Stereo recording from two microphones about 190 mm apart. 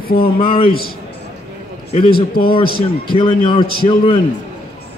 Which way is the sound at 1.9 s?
30° left (ahead or behind).